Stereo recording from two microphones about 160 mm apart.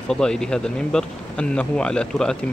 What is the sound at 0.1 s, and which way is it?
Speech, 5° left (ahead or behind).